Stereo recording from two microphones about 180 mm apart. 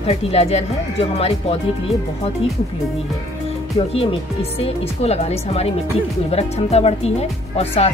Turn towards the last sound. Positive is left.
turn(degrees=35)  # may be behind; listen again after turning